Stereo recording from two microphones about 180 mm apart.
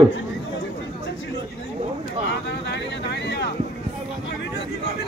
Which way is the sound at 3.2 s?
70° left (ahead or behind).